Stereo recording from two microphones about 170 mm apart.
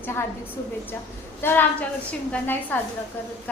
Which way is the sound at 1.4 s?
10° left (ahead or behind).